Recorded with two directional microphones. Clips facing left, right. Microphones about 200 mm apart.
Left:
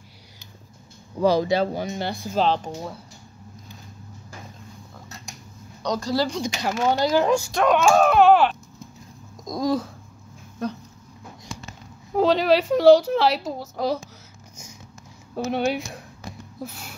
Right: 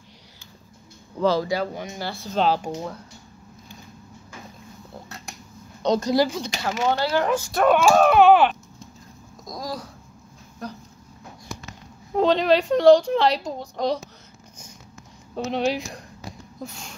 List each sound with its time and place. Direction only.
1.2 s speech: 15° left (ahead or behind)
2.0 s speech: 15° left (ahead or behind)
2.3 s a woman's voice: 5° right (ahead or behind)
5.8 s speech: 20° right (ahead or behind)
6.4 s speech: 15° left (ahead or behind)
7.5 s a woman's voice: 5° right (ahead or behind)
9.4 s a sound: 25° left (ahead or behind)
12.2 s a woman's voice: 5° left (ahead or behind)
15.3 s a woman's voice: 5° left (ahead or behind)